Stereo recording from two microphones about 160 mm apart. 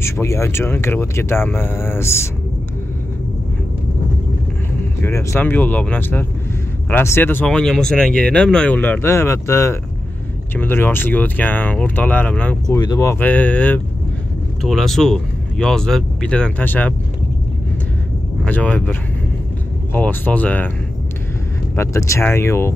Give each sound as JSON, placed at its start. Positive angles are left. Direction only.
{"t": 0.0, "sound": "speech", "side_deg": 15}
{"t": 5.0, "sound": "speech", "side_deg": 15}
{"t": 12.6, "sound": "speech", "side_deg": 25}
{"t": 18.4, "sound": "speech", "side_deg": 10}
{"t": 21.7, "sound": "speech", "side_deg": 20}